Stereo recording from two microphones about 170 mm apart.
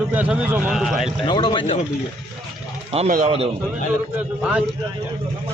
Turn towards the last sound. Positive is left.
turn(degrees=-5)  # may be behind; listen again after turning